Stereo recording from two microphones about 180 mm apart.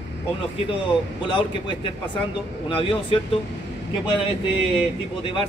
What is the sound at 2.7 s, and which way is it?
Speech, 30° left (ahead or behind).